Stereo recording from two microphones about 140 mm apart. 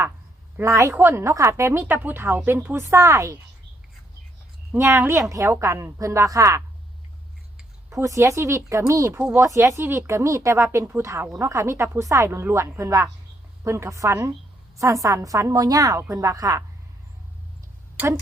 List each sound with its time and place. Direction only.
0.5 s speech: 20° right (ahead or behind)
4.8 s speech: 20° right (ahead or behind)
7.9 s speech: 20° right (ahead or behind)